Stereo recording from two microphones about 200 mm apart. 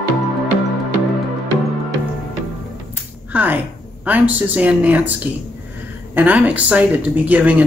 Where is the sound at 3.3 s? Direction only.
10° right (ahead or behind).